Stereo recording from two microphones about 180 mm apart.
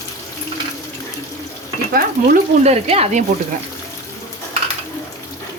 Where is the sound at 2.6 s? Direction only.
35° right (ahead or behind).